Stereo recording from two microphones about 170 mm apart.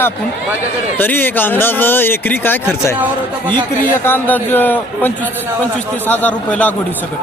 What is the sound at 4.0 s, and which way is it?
Speech, 10° left (ahead or behind).